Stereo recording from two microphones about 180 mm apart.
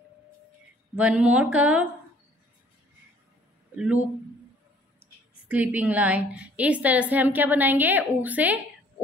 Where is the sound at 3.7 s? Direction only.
5° right (ahead or behind).